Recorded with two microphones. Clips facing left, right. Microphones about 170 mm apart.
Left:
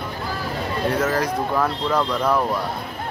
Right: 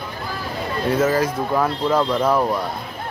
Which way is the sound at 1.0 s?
5° right (ahead or behind).